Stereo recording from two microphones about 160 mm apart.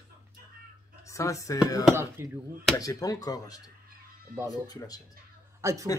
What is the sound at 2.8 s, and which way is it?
Speech, 20° left (ahead or behind).